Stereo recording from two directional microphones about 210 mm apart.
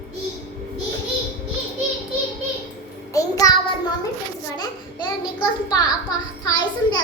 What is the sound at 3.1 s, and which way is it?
Speech, 15° left (ahead or behind).